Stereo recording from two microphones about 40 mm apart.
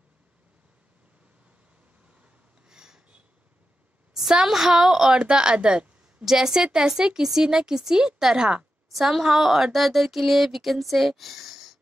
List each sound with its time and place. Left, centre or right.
2.7 s a sound: centre
4.1 s speech: centre
6.2 s speech: centre